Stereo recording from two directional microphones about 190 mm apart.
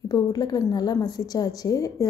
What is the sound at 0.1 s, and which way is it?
A woman's voice, 20° left (ahead or behind).